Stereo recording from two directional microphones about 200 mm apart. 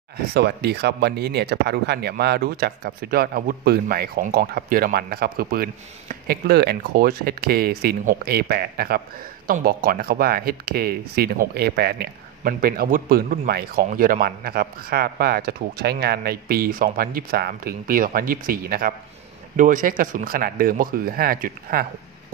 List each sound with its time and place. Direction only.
0.3 s speech: 55° right (ahead or behind)